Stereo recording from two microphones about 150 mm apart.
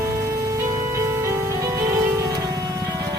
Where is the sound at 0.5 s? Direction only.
20° right (ahead or behind).